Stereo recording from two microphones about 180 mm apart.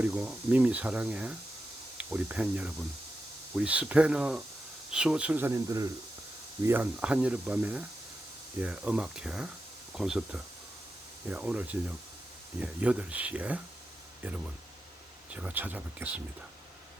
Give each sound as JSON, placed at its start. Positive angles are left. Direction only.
{"t": 0.0, "sound": "speech", "side_deg": -5}